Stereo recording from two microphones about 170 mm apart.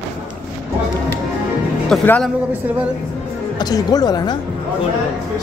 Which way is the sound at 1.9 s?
5° left (ahead or behind).